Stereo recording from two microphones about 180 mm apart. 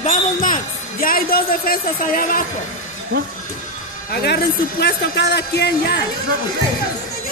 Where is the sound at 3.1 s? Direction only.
75° right (ahead or behind).